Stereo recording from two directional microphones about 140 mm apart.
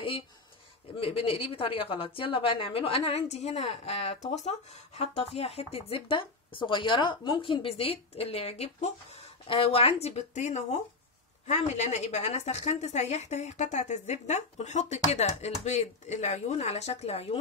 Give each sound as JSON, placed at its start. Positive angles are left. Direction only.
{"t": 0.9, "sound": "a woman's voice", "side_deg": 40}